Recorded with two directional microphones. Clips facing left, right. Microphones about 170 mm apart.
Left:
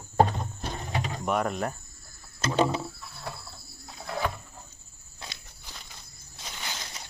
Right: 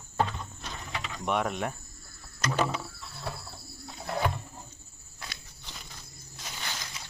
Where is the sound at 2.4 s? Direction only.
25° left (ahead or behind).